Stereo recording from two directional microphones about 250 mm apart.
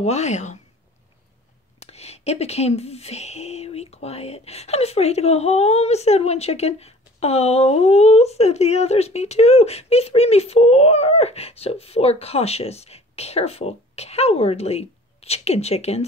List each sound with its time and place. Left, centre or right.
0.0 s speech: left
1.8 s speech: left